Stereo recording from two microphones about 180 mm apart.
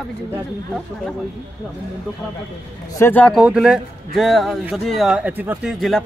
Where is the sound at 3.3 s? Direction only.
5° right (ahead or behind).